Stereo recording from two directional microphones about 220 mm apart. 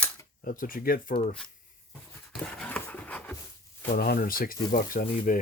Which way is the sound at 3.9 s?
40° left (ahead or behind).